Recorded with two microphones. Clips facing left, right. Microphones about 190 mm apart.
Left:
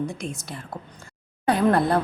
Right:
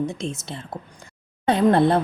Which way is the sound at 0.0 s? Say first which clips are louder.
Right 3 dB; 25° right (ahead or behind).